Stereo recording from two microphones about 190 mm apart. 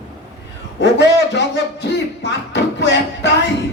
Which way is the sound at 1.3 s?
65° left (ahead or behind).